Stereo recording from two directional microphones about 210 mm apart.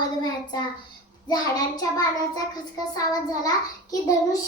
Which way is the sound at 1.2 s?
20° left (ahead or behind).